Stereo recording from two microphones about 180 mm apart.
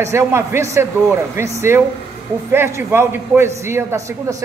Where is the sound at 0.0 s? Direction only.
15° right (ahead or behind).